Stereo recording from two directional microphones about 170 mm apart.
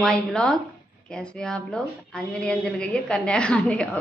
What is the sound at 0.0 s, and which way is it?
A woman's voice, 5° left (ahead or behind).